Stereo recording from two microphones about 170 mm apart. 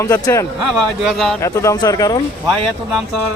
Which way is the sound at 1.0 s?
Centre (ahead or behind).